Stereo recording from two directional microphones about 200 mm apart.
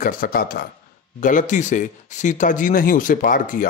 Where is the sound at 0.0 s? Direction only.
45° left (ahead or behind).